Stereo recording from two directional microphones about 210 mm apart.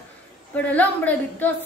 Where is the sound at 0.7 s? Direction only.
5° left (ahead or behind).